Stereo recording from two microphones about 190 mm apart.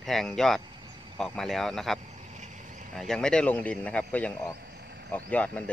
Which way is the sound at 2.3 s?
40° right (ahead or behind).